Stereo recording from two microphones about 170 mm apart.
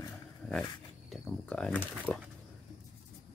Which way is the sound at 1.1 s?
5° left (ahead or behind).